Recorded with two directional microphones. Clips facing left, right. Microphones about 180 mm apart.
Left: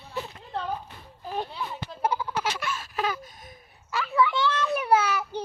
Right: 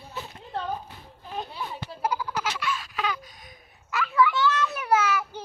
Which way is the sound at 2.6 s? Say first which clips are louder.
Even; 45° left (ahead or behind).